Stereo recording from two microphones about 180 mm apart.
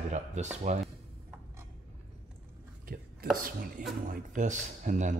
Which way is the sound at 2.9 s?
60° right (ahead or behind).